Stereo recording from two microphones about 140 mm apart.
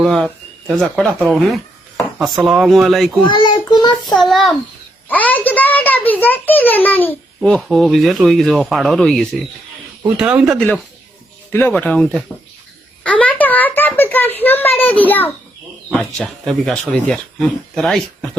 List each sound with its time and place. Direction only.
0.0 s speech: 5° left (ahead or behind)
3.2 s a sound: 35° left (ahead or behind)
4.0 s speech: centre (ahead or behind)
5.0 s a child's voice: 10° left (ahead or behind); by 10.6 s 10° right (ahead or behind)
11.5 s a child's voice: 10° left (ahead or behind)